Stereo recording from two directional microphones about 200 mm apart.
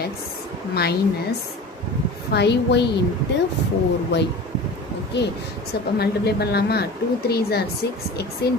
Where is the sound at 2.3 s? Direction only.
60° left (ahead or behind).